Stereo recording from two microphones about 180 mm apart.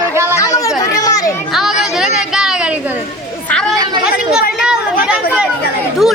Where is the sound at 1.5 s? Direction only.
Centre (ahead or behind).